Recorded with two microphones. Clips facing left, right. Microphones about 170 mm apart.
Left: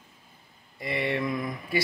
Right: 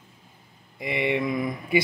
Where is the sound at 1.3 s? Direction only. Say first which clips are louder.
Right 5 dB; 20° right (ahead or behind).